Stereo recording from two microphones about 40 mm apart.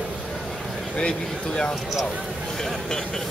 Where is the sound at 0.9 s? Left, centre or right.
Left.